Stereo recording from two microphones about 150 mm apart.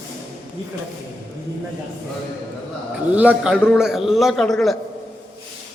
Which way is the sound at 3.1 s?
10° right (ahead or behind).